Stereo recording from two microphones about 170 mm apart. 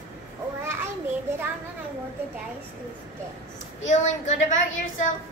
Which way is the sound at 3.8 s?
45° left (ahead or behind).